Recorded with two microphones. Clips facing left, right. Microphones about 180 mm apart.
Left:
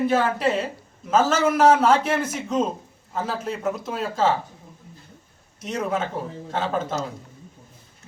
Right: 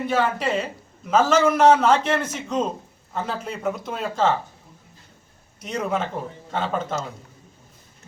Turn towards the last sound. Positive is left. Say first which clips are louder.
# even
turn(degrees=5)  # may be behind; listen again after turning